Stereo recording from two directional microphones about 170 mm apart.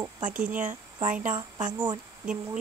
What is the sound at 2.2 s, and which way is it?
Speech, 5° right (ahead or behind).